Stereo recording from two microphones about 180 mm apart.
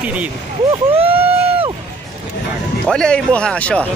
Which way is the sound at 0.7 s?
30° right (ahead or behind).